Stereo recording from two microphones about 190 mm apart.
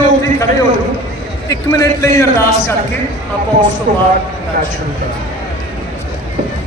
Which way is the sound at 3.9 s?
45° right (ahead or behind).